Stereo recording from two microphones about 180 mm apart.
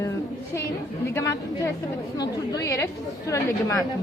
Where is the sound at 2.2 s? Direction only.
20° left (ahead or behind).